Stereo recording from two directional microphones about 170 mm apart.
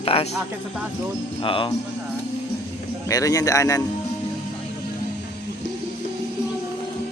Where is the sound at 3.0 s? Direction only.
20° left (ahead or behind).